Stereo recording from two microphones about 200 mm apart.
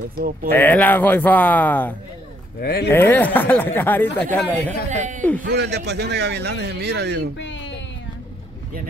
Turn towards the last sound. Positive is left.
turn(degrees=65)  # may be behind; listen again after turning